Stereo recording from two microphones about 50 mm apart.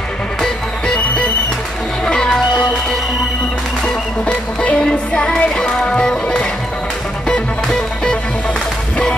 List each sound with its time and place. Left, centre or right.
0.4 s music: centre
2.0 s music: centre
4.3 s music: left
7.6 s music: centre